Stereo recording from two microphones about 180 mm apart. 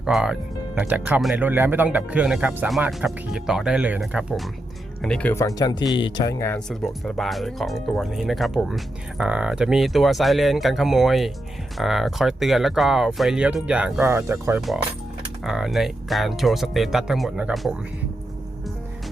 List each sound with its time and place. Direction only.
0.0 s speech: 5° right (ahead or behind); by 6.3 s 25° left (ahead or behind)
6.4 s speech: 5° left (ahead or behind); by 14.6 s 15° right (ahead or behind)
15.4 s speech: centre (ahead or behind)